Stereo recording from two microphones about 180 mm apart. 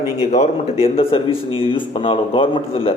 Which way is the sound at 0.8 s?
30° left (ahead or behind).